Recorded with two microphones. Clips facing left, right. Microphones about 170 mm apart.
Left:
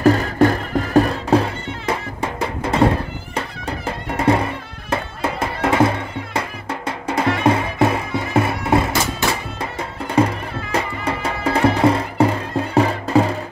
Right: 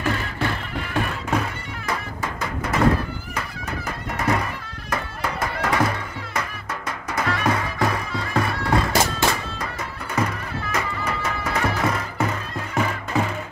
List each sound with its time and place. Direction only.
0.0 s music: 40° left (ahead or behind)